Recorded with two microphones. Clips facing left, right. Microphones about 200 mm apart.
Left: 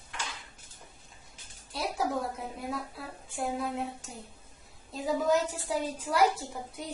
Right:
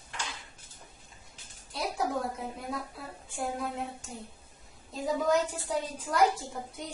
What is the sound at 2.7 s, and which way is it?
A woman's voice, centre (ahead or behind).